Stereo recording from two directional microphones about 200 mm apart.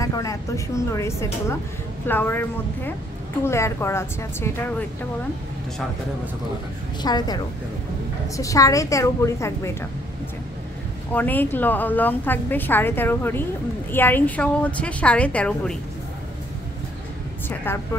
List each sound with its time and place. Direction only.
0.0 s a woman's voice: 15° left (ahead or behind)
7.0 s a woman's voice: 20° left (ahead or behind)
11.1 s a woman's voice: 10° left (ahead or behind)
17.7 s a woman's voice: 10° left (ahead or behind)